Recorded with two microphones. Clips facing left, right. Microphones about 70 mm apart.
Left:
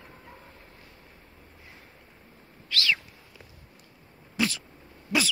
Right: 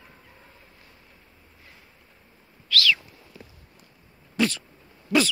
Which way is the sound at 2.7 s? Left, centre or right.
Left.